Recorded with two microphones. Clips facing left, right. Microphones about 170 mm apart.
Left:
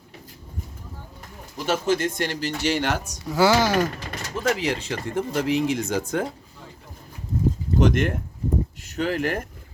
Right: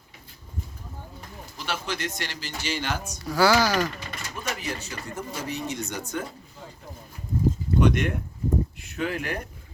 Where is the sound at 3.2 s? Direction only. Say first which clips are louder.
Left 2 dB; 20° left (ahead or behind).